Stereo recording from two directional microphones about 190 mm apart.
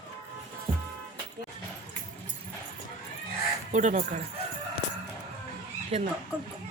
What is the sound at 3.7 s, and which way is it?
Speech, 40° right (ahead or behind).